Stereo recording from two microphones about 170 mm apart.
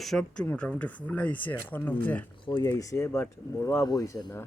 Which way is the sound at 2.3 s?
30° left (ahead or behind).